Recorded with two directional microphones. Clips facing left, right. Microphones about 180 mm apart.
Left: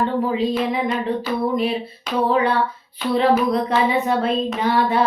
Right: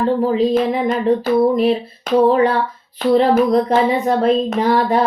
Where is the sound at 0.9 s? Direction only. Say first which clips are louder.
Right 6 dB; 45° right (ahead or behind).